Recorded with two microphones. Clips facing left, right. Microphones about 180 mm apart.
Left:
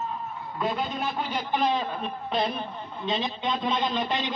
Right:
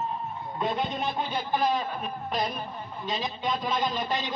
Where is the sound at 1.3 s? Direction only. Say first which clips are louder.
Left 1 dB; 20° left (ahead or behind).